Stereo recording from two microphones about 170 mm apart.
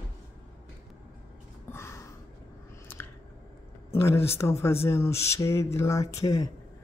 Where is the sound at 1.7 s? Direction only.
15° left (ahead or behind).